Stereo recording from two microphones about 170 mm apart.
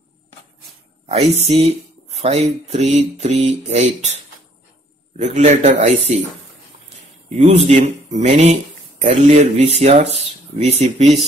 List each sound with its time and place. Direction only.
1.0 s mantra: 40° right (ahead or behind)
5.2 s mantra: 40° right (ahead or behind)
7.2 s mantra: 40° right (ahead or behind)